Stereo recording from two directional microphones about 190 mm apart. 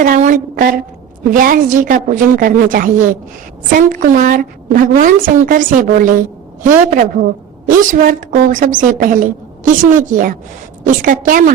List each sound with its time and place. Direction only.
0.0 s a woman's voice: 45° right (ahead or behind)